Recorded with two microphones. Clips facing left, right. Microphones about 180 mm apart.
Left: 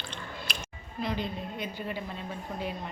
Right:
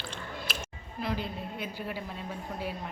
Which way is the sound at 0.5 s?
5° right (ahead or behind).